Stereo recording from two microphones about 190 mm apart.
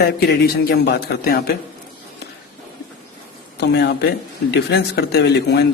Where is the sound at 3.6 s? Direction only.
60° left (ahead or behind).